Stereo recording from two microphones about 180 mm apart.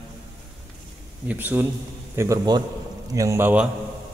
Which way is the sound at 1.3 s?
10° right (ahead or behind).